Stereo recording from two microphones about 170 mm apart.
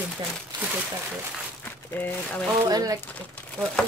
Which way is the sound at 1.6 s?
10° left (ahead or behind).